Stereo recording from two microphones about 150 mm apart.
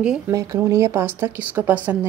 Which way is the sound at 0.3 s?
20° right (ahead or behind).